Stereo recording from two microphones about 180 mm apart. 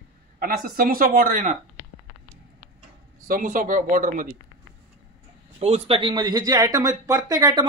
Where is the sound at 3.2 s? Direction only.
50° right (ahead or behind).